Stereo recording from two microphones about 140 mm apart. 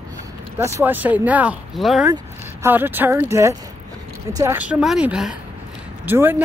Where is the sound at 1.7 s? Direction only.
Centre (ahead or behind).